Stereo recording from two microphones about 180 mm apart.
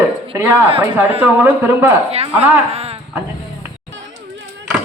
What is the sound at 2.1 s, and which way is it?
Speech, 35° right (ahead or behind).